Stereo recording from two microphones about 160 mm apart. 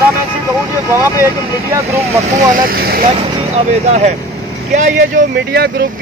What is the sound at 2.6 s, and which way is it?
Speech, 70° right (ahead or behind).